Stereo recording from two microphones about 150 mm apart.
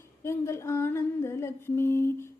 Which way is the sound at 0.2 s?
15° left (ahead or behind).